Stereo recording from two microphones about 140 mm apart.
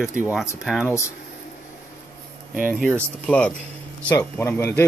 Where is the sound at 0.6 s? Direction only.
5° right (ahead or behind).